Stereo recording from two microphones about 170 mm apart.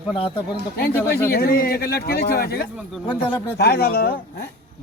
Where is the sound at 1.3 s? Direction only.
65° left (ahead or behind).